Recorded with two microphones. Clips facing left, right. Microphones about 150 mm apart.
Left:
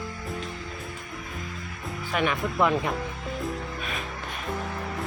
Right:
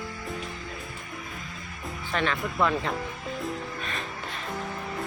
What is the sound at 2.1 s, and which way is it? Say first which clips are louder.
Speech: left 2 dB; 15° left (ahead or behind).